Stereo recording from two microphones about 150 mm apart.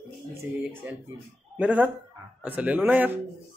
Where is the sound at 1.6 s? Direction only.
10° right (ahead or behind).